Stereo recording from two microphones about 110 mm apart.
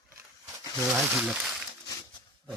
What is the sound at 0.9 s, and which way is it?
Speech, 20° right (ahead or behind).